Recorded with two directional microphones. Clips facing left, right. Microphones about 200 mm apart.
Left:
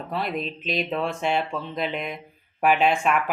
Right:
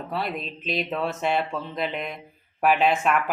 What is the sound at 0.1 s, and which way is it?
Speech, centre (ahead or behind).